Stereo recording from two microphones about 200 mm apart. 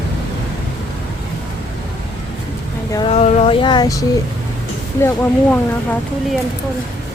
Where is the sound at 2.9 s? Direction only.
25° left (ahead or behind).